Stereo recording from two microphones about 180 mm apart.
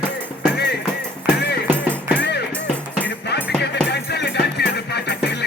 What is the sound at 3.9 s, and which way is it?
Music, 70° left (ahead or behind).